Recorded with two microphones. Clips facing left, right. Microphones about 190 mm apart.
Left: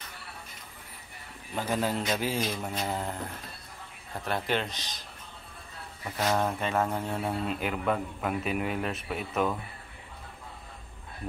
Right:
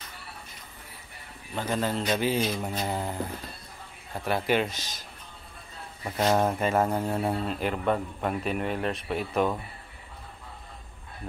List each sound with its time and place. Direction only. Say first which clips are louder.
1.5 s a man's voice: right 1 dB; 5° left (ahead or behind)
4.2 s a man's voice: right 4 dB; 5° right (ahead or behind)
6.0 s speech: right 4 dB; 20° right (ahead or behind)
6.6 s a man's voice: right 4 dB; 5° right (ahead or behind)